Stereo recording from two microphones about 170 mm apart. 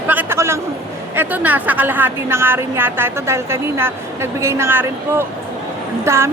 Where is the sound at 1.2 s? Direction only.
10° right (ahead or behind).